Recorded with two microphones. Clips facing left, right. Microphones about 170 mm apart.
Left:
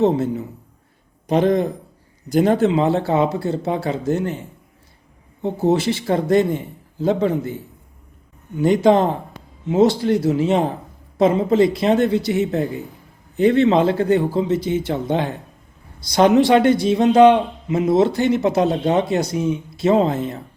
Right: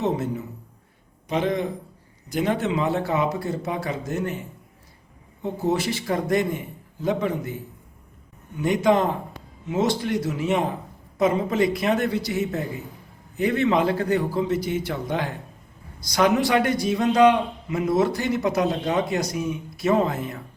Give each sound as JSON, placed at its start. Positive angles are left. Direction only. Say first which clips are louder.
{"t": 0.0, "sound": "a man's voice", "louder": "left 7 dB", "side_deg": 30}
{"t": 5.4, "sound": "a man's voice", "louder": "left 6 dB", "side_deg": 30}
{"t": 8.6, "sound": "a man's voice", "louder": "left 5 dB", "side_deg": 30}